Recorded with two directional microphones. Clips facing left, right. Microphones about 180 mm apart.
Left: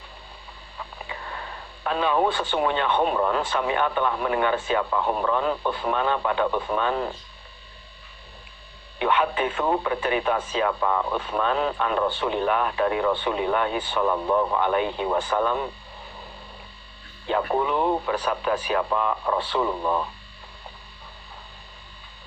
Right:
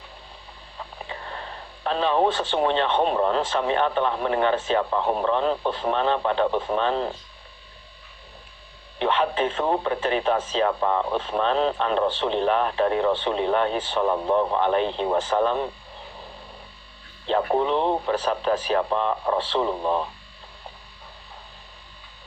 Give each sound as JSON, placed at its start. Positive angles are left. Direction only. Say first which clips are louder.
{"t": 0.8, "sound": "speech", "louder": "right 1 dB", "side_deg": -35}
{"t": 9.0, "sound": "speech", "louder": "right 1 dB", "side_deg": -35}
{"t": 17.2, "sound": "speech", "louder": "right 2 dB", "side_deg": -35}